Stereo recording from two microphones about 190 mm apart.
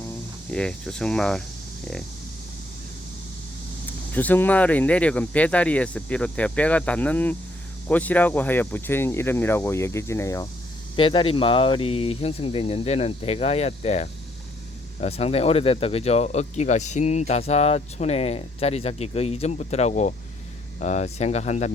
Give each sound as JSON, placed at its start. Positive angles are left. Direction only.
{"t": 0.5, "sound": "speech", "side_deg": 5}
{"t": 4.1, "sound": "speech", "side_deg": 10}
{"t": 10.9, "sound": "speech", "side_deg": 30}